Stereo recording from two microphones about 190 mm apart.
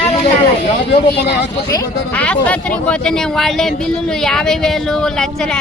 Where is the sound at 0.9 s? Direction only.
60° left (ahead or behind).